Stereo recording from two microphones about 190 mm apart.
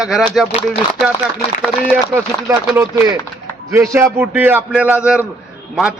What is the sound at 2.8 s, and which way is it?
A man's voice, 15° right (ahead or behind).